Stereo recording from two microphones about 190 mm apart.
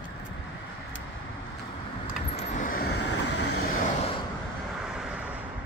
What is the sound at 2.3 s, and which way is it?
Vehicle, 35° left (ahead or behind).